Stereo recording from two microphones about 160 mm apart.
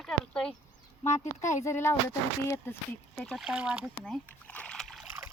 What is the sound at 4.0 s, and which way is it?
Splash, 10° left (ahead or behind).